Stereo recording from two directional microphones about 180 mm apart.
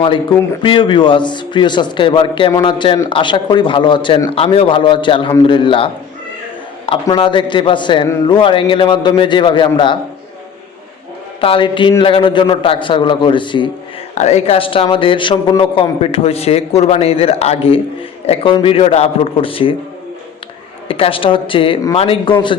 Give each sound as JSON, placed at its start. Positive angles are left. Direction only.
{"t": 0.6, "sound": "a man's voice", "side_deg": 25}
{"t": 11.3, "sound": "a man's voice", "side_deg": 30}
{"t": 14.2, "sound": "speech", "side_deg": 35}
{"t": 20.8, "sound": "a man's voice", "side_deg": 30}